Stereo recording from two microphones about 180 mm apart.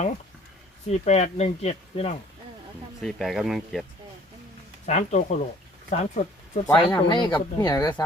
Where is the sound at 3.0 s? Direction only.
Centre (ahead or behind).